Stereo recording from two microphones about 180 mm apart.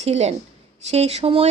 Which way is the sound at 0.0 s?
35° right (ahead or behind).